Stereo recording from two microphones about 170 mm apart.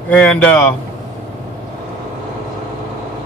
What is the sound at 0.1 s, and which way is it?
Speech, 5° left (ahead or behind).